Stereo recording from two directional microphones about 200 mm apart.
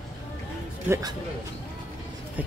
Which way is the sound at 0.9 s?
20° right (ahead or behind).